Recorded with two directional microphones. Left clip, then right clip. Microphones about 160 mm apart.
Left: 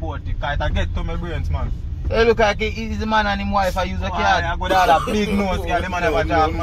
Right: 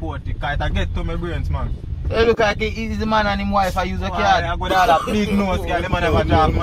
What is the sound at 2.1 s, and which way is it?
Speech, centre (ahead or behind).